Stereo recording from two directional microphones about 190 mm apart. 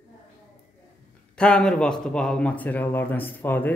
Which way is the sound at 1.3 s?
5° left (ahead or behind).